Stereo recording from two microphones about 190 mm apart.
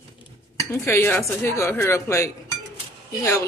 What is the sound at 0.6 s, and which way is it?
Speech, 15° left (ahead or behind).